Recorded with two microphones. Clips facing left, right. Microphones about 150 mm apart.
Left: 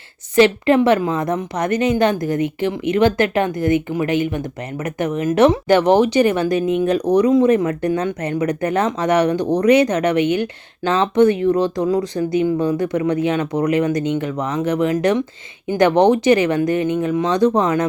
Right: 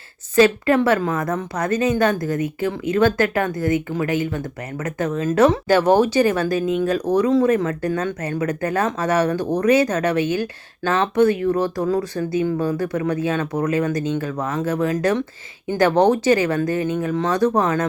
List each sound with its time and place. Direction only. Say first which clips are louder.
0.3 s speech: left 2 dB; 20° left (ahead or behind)